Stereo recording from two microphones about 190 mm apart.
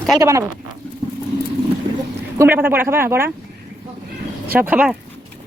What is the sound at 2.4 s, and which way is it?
Speech, 10° right (ahead or behind).